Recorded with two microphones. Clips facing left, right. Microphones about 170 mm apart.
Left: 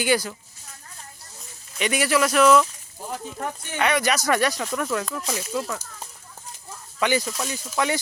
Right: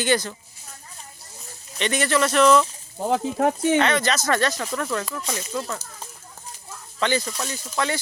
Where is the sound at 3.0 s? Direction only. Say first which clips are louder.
Right 10 dB; 80° right.